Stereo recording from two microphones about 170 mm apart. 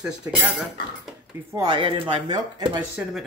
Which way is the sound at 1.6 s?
25° right (ahead or behind).